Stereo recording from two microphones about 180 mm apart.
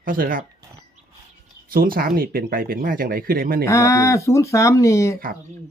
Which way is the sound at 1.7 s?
55° right (ahead or behind).